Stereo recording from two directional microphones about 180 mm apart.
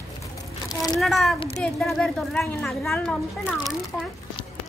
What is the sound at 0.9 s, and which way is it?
Speech, centre (ahead or behind).